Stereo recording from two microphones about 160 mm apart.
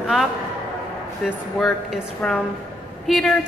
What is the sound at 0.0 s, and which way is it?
A man's voice, centre (ahead or behind).